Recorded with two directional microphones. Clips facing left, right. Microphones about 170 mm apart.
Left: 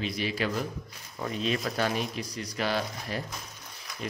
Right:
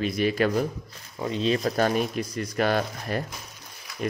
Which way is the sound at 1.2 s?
30° right (ahead or behind).